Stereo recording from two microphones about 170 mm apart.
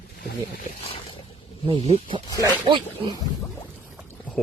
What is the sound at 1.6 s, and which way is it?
Speech, 35° right (ahead or behind).